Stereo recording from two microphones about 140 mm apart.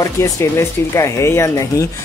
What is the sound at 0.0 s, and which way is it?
Speech, 20° left (ahead or behind).